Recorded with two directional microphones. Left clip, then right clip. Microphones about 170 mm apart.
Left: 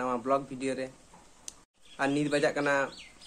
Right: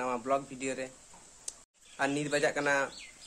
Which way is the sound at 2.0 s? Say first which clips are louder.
Left 2 dB; 5° right (ahead or behind).